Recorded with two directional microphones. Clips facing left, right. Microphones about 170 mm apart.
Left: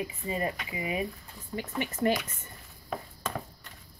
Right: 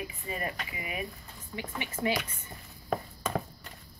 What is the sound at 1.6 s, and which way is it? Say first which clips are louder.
Speech: left 4 dB; 45° left (ahead or behind).